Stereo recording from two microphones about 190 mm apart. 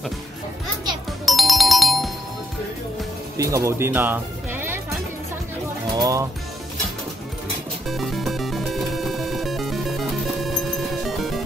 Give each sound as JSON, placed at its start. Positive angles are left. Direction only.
{"t": 1.2, "sound": "ringtone", "side_deg": 0}
{"t": 3.3, "sound": "speech", "side_deg": -15}
{"t": 5.9, "sound": "music", "side_deg": -15}
{"t": 7.9, "sound": "music", "side_deg": 0}